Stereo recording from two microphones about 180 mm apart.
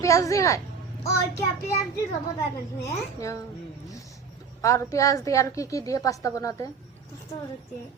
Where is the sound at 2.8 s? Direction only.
15° left (ahead or behind).